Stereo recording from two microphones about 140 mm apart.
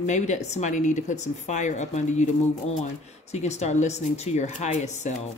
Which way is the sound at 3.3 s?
50° left (ahead or behind).